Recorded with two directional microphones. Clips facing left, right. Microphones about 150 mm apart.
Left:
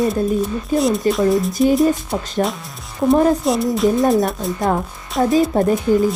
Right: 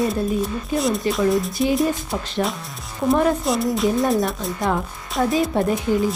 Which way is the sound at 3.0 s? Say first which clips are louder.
Left 4 dB; 20° left (ahead or behind).